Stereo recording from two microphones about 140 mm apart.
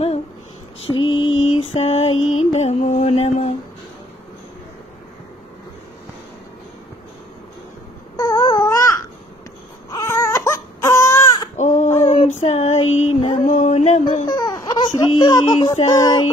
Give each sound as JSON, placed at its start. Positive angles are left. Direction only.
{"t": 0.8, "sound": "mantra", "side_deg": 35}
{"t": 8.2, "sound": "a sound", "side_deg": 25}
{"t": 9.8, "sound": "baby cry", "side_deg": 20}
{"t": 11.5, "sound": "female singing", "side_deg": 55}
{"t": 14.2, "sound": "baby cry", "side_deg": 30}
{"t": 15.1, "sound": "speech", "side_deg": 25}
{"t": 15.9, "sound": "music", "side_deg": 25}